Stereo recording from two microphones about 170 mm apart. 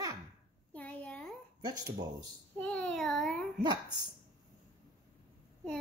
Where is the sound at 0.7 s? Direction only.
10° left (ahead or behind).